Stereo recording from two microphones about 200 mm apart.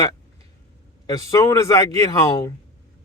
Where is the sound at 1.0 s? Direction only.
15° left (ahead or behind).